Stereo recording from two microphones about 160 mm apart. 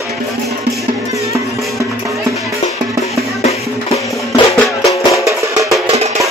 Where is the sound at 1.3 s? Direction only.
20° right (ahead or behind).